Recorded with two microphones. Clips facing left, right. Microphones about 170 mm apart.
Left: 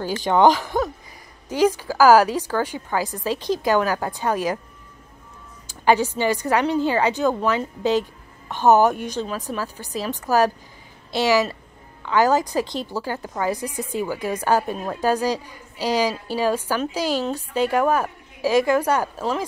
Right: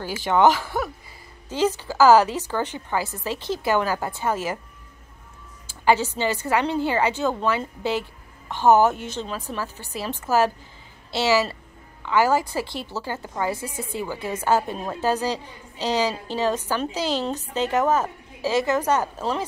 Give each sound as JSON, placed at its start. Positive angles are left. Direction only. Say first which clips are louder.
{"t": 0.2, "sound": "a woman's voice", "louder": "left 2 dB", "side_deg": 20}
{"t": 5.7, "sound": "a woman's voice", "louder": "left 2 dB", "side_deg": 15}